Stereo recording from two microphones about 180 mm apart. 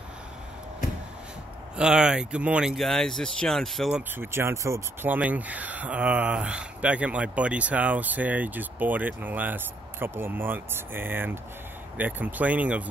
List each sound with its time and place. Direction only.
1.8 s speech: 5° right (ahead or behind)
4.2 s speech: 15° right (ahead or behind)